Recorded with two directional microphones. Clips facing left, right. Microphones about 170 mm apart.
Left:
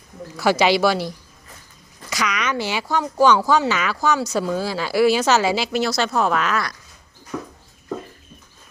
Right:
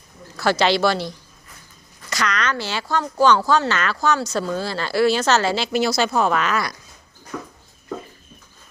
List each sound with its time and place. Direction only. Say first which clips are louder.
0.6 s speech: left 1 dB; 10° left (ahead or behind)
7.3 s speech: left 2 dB; 15° left (ahead or behind)